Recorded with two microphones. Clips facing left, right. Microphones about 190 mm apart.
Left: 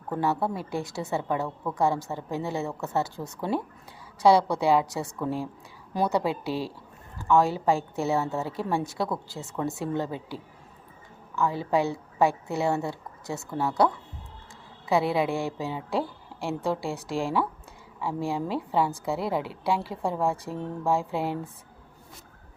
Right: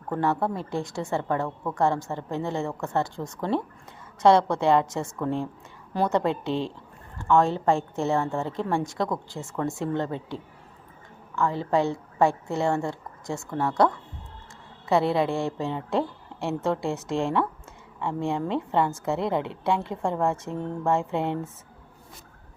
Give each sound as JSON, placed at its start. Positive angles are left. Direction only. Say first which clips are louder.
{"t": 0.1, "sound": "a woman's voice", "louder": "right 1 dB", "side_deg": 5}
{"t": 9.4, "sound": "speech", "louder": "right 1 dB", "side_deg": 20}
{"t": 9.7, "sound": "a woman's voice", "louder": "right 2 dB", "side_deg": 5}